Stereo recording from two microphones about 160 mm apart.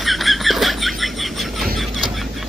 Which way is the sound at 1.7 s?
Centre (ahead or behind).